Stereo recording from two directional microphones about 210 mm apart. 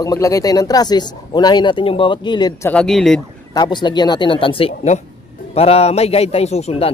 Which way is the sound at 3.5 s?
20° left (ahead or behind).